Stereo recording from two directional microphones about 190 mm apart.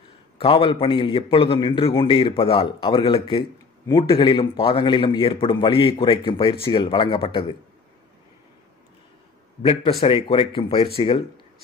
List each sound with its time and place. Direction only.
0.4 s a man's voice: 30° left (ahead or behind)
9.6 s a man's voice: 30° left (ahead or behind)